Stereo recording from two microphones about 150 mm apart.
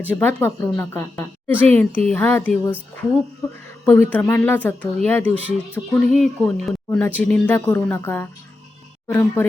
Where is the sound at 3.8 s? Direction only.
15° left (ahead or behind).